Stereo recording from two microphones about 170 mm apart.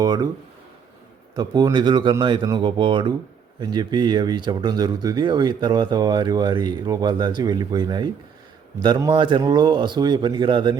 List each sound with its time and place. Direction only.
0.0 s speech: 25° right (ahead or behind)
1.4 s speech: 25° right (ahead or behind)